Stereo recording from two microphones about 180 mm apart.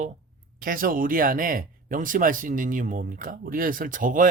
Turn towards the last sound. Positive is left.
turn(degrees=-45)  # may be behind; listen again after turning